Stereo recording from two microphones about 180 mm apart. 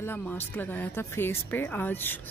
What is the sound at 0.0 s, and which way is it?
A woman's voice, 10° left (ahead or behind).